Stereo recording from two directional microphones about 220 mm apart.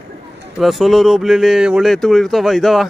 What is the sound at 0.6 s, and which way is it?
A man's voice, centre (ahead or behind).